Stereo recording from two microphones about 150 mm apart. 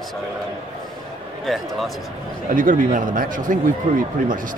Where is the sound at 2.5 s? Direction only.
65° right (ahead or behind).